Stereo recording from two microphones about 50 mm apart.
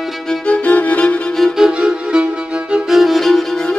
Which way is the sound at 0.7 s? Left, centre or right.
Left.